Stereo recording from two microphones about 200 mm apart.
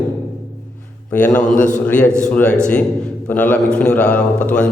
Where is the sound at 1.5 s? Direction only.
40° left (ahead or behind).